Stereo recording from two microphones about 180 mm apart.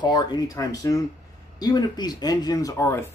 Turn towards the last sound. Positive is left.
turn(degrees=15)  # may be behind; listen again after turning